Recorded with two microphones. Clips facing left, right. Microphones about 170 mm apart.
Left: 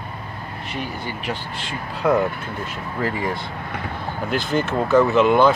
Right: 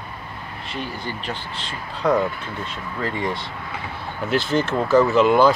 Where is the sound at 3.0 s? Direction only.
5° left (ahead or behind).